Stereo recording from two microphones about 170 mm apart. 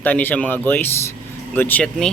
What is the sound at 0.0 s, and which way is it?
Speech, 10° left (ahead or behind).